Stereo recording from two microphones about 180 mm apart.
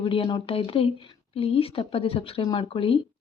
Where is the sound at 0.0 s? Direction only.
30° left (ahead or behind).